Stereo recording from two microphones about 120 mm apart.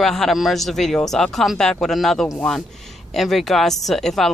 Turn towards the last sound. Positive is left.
turn(degrees=5)  # may be behind; listen again after turning